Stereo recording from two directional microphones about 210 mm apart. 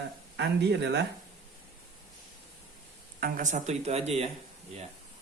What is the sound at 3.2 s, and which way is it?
Speech, 40° right (ahead or behind).